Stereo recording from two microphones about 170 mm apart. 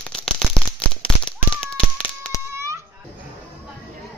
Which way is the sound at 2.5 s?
15° right (ahead or behind).